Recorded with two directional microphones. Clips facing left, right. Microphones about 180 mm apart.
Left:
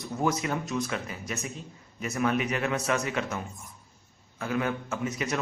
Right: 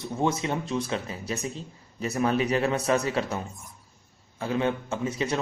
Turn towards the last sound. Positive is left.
turn(degrees=-30)  # may be behind; listen again after turning